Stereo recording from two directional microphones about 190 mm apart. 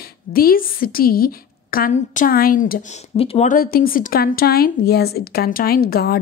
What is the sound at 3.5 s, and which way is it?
A woman's voice, 50° left (ahead or behind).